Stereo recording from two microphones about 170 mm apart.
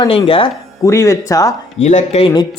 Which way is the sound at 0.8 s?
20° left (ahead or behind).